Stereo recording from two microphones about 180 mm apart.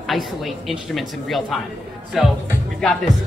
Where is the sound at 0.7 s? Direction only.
Centre (ahead or behind).